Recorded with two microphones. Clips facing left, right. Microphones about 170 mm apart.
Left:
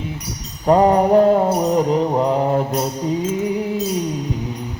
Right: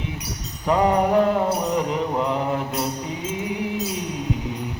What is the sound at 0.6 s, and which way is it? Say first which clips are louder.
Mantra: left 5 dB; 40° left (ahead or behind).